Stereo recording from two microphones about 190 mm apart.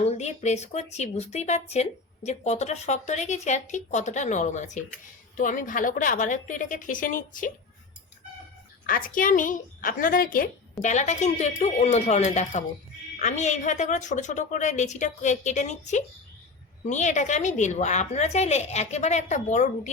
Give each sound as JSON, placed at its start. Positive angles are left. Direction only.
{"t": 0.0, "sound": "a woman's voice", "side_deg": 35}
{"t": 8.9, "sound": "a woman's voice", "side_deg": 45}